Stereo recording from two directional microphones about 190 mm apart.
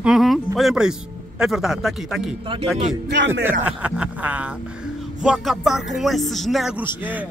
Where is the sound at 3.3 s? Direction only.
10° right (ahead or behind).